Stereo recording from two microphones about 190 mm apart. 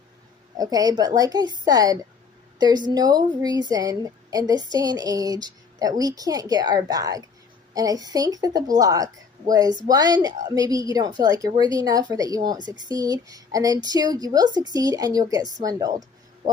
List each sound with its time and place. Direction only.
0.6 s a woman's voice: 20° right (ahead or behind)